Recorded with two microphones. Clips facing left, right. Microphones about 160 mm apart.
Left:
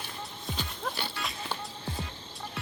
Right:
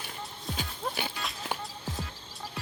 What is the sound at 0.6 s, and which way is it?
Music, 15° right (ahead or behind).